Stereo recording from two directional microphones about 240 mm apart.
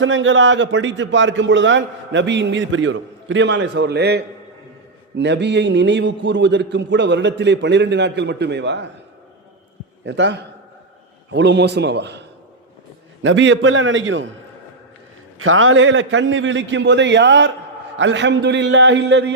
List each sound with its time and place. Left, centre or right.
0.0 s a man's voice: right
10.1 s a man's voice: right
13.2 s a man's voice: right
15.4 s a man's voice: right